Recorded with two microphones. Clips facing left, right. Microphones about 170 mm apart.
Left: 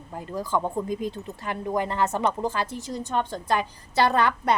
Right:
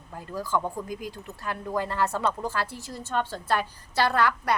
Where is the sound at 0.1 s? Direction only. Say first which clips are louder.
Left 2 dB; 20° left (ahead or behind).